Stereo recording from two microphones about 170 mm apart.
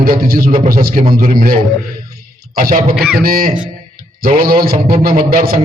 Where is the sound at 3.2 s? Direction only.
60° right (ahead or behind).